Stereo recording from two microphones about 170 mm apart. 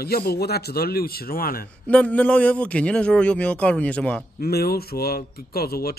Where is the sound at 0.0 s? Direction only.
65° left (ahead or behind).